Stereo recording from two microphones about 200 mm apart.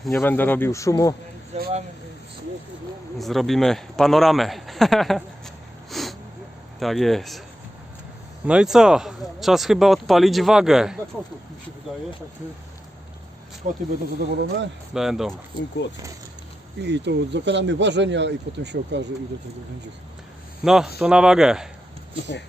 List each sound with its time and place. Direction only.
0.1 s speech: 10° left (ahead or behind)
1.5 s speech: 35° right (ahead or behind)
3.2 s speech: centre (ahead or behind)
5.9 s a sound: centre (ahead or behind)
6.7 s speech: centre (ahead or behind)
8.4 s speech: 5° right (ahead or behind)
13.6 s speech: 40° right (ahead or behind)
14.2 s speech: 60° right (ahead or behind)
14.9 s speech: centre (ahead or behind)
16.8 s speech: 60° right (ahead or behind)
20.7 s speech: centre (ahead or behind)